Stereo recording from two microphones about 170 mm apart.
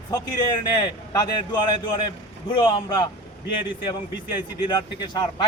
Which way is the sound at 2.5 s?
25° left (ahead or behind).